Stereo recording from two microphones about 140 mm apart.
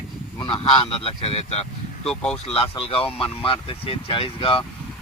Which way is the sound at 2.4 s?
45° left (ahead or behind).